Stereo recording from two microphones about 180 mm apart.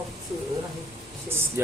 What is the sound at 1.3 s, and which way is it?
Speech, 15° right (ahead or behind).